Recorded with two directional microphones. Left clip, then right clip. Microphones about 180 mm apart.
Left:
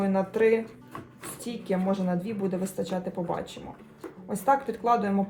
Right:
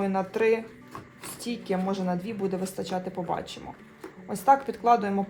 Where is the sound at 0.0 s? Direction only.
35° right (ahead or behind).